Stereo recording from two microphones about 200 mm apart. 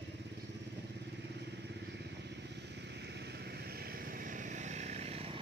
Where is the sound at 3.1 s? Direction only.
55° right (ahead or behind); by 5.4 s 30° right (ahead or behind).